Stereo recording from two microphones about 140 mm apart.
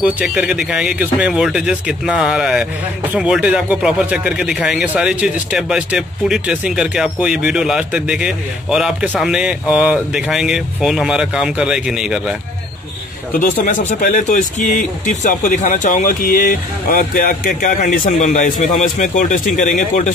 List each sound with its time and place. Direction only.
0.0 s speech: 5° right (ahead or behind)
13.3 s speech: 80° left